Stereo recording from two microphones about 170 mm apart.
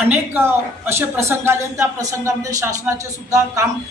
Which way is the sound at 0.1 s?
10° right (ahead or behind).